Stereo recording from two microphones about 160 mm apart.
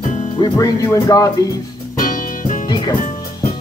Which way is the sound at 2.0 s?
60° left (ahead or behind).